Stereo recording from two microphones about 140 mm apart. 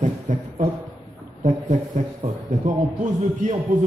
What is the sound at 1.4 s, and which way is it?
A man's voice, 65° right (ahead or behind).